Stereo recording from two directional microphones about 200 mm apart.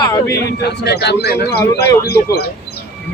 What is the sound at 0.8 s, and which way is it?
Speech, 55° left (ahead or behind).